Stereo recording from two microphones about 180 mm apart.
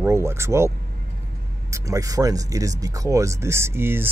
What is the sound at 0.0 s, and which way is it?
Speech, 15° right (ahead or behind).